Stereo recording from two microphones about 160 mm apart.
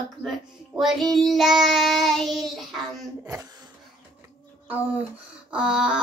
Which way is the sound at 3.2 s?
20° right (ahead or behind).